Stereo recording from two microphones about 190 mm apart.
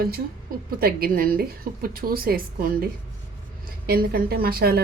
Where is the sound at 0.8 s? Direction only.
55° right (ahead or behind).